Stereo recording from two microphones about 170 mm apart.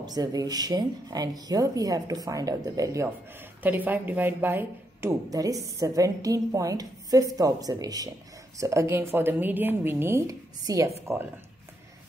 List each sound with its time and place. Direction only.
0.0 s a woman's voice: 20° right (ahead or behind)